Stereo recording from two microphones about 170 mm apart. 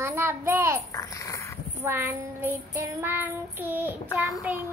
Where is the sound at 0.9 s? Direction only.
20° left (ahead or behind).